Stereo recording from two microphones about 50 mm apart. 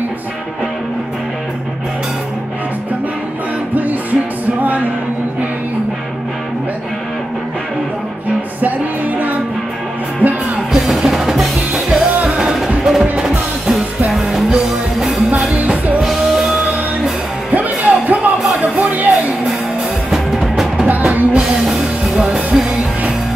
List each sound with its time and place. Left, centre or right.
4.6 s music: right
8.5 s music: right
10.7 s music: centre
15.5 s music: right
16.0 s music: centre
17.5 s music: right
20.1 s music: centre
21.1 s music: right
21.4 s music: centre